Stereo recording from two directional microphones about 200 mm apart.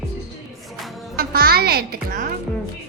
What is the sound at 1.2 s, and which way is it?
A child's voice, 50° right (ahead or behind).